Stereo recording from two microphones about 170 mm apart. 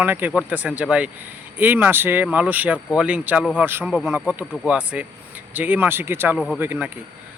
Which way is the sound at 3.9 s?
Centre (ahead or behind).